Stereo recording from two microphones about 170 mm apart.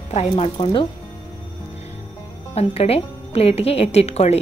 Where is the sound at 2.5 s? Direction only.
35° left (ahead or behind).